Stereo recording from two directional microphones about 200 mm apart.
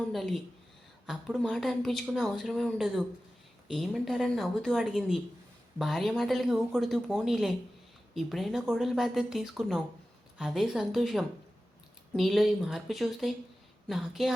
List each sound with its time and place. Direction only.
0.1 s speech: centre (ahead or behind)